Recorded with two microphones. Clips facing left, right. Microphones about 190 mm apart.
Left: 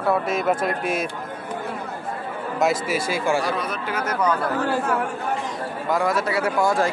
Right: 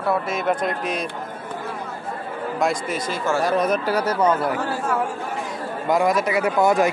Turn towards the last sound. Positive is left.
turn(degrees=-20)  # may be behind; listen again after turning